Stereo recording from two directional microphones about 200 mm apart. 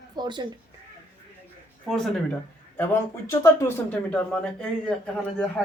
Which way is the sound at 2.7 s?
15° left (ahead or behind).